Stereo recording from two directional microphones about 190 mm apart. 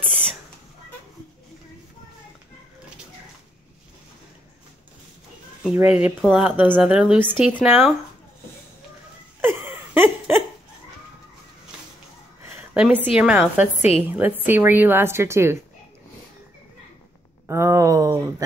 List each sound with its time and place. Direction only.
5.6 s speech: 5° right (ahead or behind)
9.4 s a sound: 10° right (ahead or behind)
12.5 s a woman's voice: 10° right (ahead or behind)
13.7 s a woman's voice: 35° left (ahead or behind)
14.1 s speech: 10° right (ahead or behind)
17.5 s a sound: 15° right (ahead or behind)